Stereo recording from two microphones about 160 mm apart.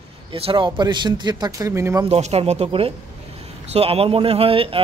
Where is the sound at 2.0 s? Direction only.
40° right (ahead or behind).